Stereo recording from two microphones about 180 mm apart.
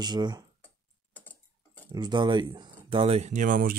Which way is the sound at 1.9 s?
25° right (ahead or behind).